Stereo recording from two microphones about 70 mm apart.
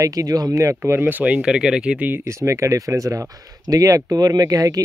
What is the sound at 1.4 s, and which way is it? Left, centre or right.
Speech, centre.